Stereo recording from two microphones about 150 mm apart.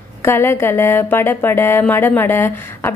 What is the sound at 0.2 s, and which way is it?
Speech, 15° left (ahead or behind).